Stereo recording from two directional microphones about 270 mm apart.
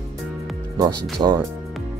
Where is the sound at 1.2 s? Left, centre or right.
Centre.